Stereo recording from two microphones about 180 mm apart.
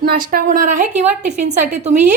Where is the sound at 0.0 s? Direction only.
55° right (ahead or behind).